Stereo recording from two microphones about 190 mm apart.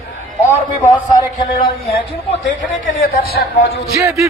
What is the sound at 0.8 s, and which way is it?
Speech, 15° left (ahead or behind).